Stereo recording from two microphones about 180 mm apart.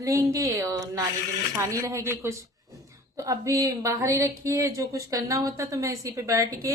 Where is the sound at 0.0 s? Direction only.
15° right (ahead or behind).